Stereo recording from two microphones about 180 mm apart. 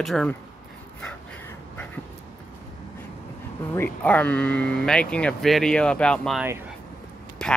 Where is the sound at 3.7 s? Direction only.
10° left (ahead or behind).